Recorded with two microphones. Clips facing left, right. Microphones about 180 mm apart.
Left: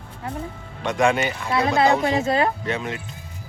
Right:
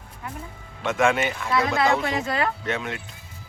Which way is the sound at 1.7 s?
20° left (ahead or behind).